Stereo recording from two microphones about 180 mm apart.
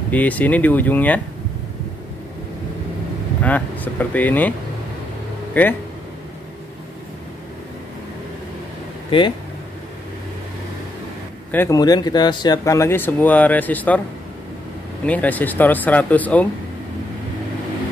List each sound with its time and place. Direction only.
0.1 s speech: 10° left (ahead or behind)
3.4 s speech: 10° left (ahead or behind)
9.1 s speech: 30° left (ahead or behind)
11.5 s speech: 15° left (ahead or behind)
15.0 s speech: 10° left (ahead or behind)